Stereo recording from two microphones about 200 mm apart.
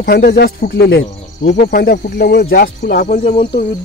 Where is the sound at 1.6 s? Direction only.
55° left (ahead or behind); by 3.4 s 35° left (ahead or behind).